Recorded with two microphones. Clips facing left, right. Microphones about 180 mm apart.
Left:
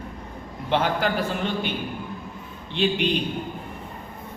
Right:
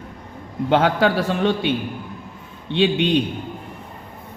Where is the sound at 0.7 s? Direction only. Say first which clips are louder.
Right 5 dB; 90° right.